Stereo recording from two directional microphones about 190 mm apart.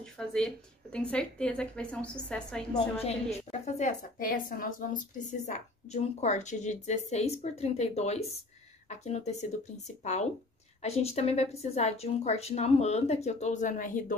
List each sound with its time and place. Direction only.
0.0 s a woman's voice: 5° left (ahead or behind)
2.7 s a woman's voice: 35° left (ahead or behind)